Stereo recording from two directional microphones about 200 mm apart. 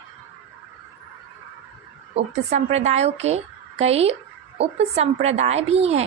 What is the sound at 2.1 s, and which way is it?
A woman's voice, 35° right (ahead or behind).